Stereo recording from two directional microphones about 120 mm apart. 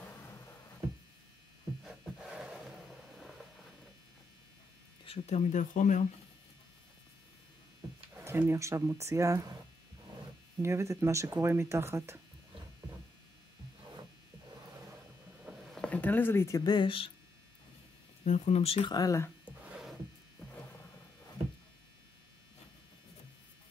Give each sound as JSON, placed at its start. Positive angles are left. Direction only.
{"t": 0.0, "sound": "music", "side_deg": 20}
{"t": 1.9, "sound": "a sound", "side_deg": 0}
{"t": 5.0, "sound": "speech", "side_deg": 60}
{"t": 8.2, "sound": "speech", "side_deg": -20}
{"t": 10.6, "sound": "speech", "side_deg": -25}
{"t": 15.7, "sound": "a sound", "side_deg": 10}
{"t": 16.6, "sound": "speech", "side_deg": 40}
{"t": 18.2, "sound": "speech", "side_deg": 75}
{"t": 18.9, "sound": "speech", "side_deg": 30}
{"t": 19.4, "sound": "a sound", "side_deg": -10}